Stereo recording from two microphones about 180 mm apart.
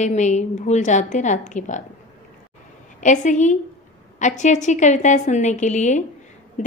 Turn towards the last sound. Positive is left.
turn(degrees=40)  # may be behind; listen again after turning